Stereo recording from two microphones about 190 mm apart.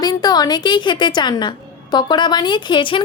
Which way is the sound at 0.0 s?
20° left (ahead or behind).